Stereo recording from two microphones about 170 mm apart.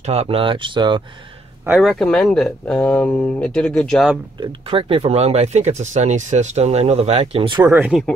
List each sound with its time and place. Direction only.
0.0 s speech: 35° right (ahead or behind)
1.7 s speech: centre (ahead or behind)
4.4 s speech: 30° right (ahead or behind)
7.7 s speech: 10° right (ahead or behind)